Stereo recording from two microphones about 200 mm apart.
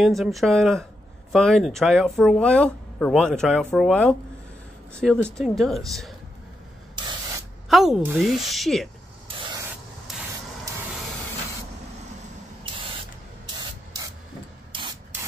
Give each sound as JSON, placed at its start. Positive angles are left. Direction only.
{"t": 0.0, "sound": "speech", "side_deg": 0}
{"t": 7.0, "sound": "spray", "side_deg": -20}
{"t": 7.7, "sound": "speech", "side_deg": -5}
{"t": 14.7, "sound": "rub", "side_deg": -25}